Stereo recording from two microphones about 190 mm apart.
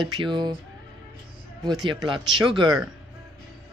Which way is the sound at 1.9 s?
25° right (ahead or behind).